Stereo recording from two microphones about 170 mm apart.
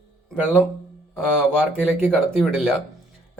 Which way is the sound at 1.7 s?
5° left (ahead or behind).